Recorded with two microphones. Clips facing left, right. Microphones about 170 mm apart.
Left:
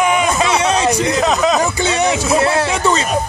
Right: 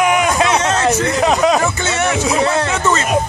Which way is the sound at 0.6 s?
15° left (ahead or behind).